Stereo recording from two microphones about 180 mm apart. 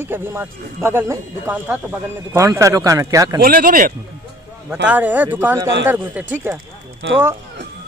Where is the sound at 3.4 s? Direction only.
50° right (ahead or behind).